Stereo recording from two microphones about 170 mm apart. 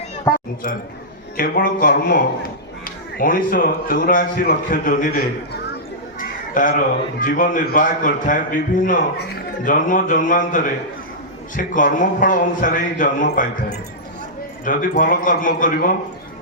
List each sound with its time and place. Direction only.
1.4 s a man's voice: 55° left (ahead or behind)
14.6 s a man's voice: 50° left (ahead or behind)